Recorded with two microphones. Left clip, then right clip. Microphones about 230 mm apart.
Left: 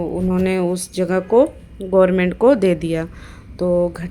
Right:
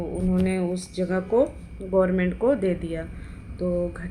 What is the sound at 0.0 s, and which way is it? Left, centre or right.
A woman's voice, left.